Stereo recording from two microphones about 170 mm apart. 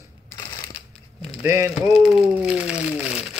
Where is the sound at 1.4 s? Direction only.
15° right (ahead or behind).